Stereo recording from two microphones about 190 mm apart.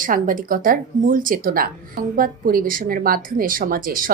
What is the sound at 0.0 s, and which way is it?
Speech, 45° right (ahead or behind).